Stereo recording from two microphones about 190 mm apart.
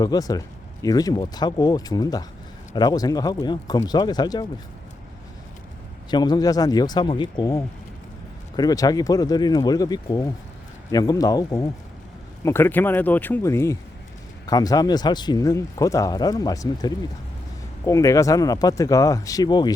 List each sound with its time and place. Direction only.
0.0 s speech: 20° left (ahead or behind)
6.1 s speech: 20° left (ahead or behind)